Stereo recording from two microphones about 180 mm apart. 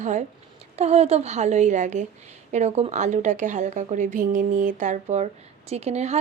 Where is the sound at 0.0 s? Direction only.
40° right (ahead or behind).